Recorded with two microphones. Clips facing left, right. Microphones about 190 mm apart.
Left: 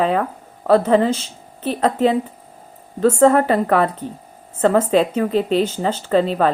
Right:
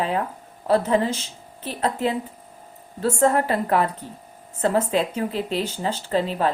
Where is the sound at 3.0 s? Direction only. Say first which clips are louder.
Left 7 dB; 75° left (ahead or behind).